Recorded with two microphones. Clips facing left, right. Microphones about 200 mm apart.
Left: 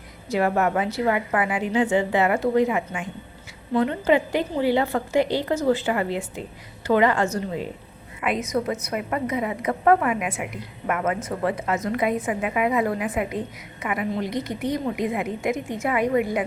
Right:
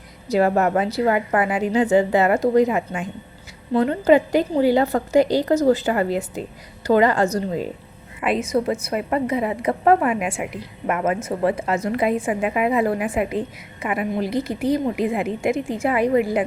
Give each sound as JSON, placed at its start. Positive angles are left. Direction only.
{"t": 0.3, "sound": "a woman's voice", "side_deg": -40}